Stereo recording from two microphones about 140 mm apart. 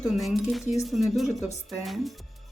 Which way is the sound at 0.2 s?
Centre (ahead or behind).